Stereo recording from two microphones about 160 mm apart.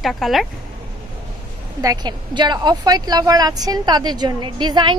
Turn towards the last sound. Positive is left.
turn(degrees=-30)  # may be behind; listen again after turning